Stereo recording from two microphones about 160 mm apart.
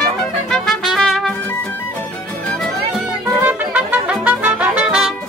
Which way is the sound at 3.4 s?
10° right (ahead or behind).